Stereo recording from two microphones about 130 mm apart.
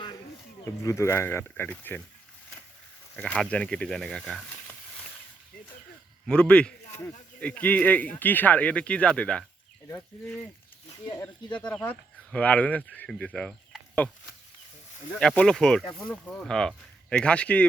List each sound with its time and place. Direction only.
0.6 s speech: 20° left (ahead or behind)
3.2 s speech: 10° left (ahead or behind)
6.2 s speech: 10° left (ahead or behind)
11.6 s speech: 15° left (ahead or behind)
15.2 s speech: 5° left (ahead or behind)